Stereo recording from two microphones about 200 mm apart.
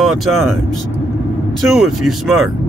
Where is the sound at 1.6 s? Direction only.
Centre (ahead or behind).